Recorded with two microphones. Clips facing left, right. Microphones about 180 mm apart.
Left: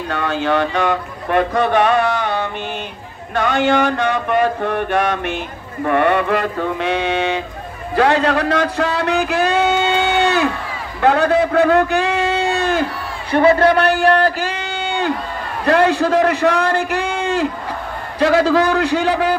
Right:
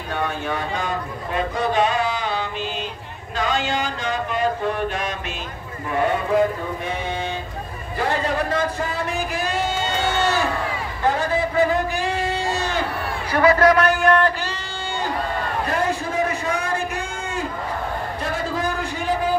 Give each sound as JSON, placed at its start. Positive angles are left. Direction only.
{"t": 0.1, "sound": "speech", "side_deg": 90}
{"t": 3.3, "sound": "a sound", "side_deg": 60}
{"t": 5.9, "sound": "speech", "side_deg": 70}
{"t": 7.9, "sound": "a sound", "side_deg": 75}
{"t": 11.0, "sound": "a man's voice", "side_deg": 70}
{"t": 13.3, "sound": "a man's voice", "side_deg": 25}
{"t": 14.5, "sound": "a sound", "side_deg": 65}
{"t": 15.6, "sound": "speech", "side_deg": 80}
{"t": 18.2, "sound": "a man's voice", "side_deg": 80}